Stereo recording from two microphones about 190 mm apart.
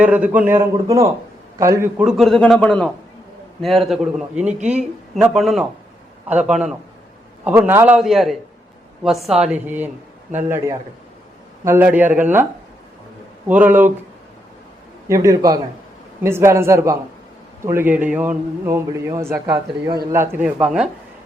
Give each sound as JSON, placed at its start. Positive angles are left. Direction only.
{"t": 0.0, "sound": "a man's voice", "side_deg": -5}
{"t": 2.0, "sound": "a man's voice", "side_deg": 0}
{"t": 11.6, "sound": "a man's voice", "side_deg": -10}
{"t": 13.5, "sound": "a man's voice", "side_deg": -10}
{"t": 15.0, "sound": "a man's voice", "side_deg": -15}